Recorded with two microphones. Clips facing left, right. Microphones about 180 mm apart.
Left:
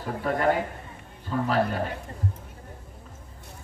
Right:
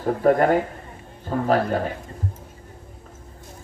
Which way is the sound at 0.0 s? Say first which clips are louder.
Right 7 dB; 45° right (ahead or behind).